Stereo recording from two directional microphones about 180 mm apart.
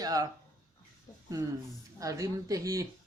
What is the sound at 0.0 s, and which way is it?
Speech, 20° right (ahead or behind).